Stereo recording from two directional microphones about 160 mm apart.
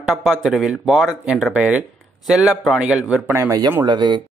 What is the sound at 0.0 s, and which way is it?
Speech, centre (ahead or behind).